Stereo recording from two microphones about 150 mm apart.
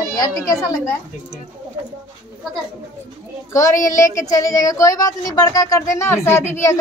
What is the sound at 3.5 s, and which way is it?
Speech, 20° left (ahead or behind).